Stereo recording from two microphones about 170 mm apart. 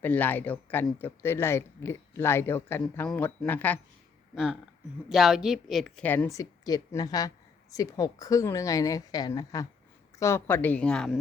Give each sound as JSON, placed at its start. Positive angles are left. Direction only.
{"t": 0.0, "sound": "speech", "side_deg": 10}
{"t": 5.0, "sound": "a woman's voice", "side_deg": 0}